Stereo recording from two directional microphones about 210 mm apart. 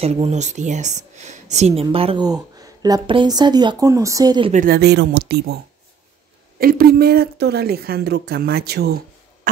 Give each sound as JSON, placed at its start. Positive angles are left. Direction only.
{"t": 0.0, "sound": "speech", "side_deg": -30}
{"t": 4.5, "sound": "a woman's voice", "side_deg": -40}
{"t": 6.6, "sound": "a woman's voice", "side_deg": -45}